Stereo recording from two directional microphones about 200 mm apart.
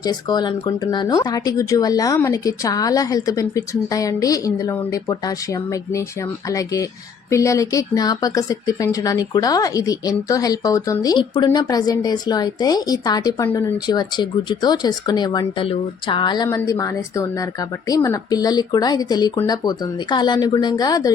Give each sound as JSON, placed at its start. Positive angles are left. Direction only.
{"t": 0.0, "sound": "speech", "side_deg": 20}